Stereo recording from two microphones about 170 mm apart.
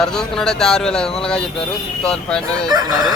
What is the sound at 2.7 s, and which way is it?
Chicken, 25° right (ahead or behind).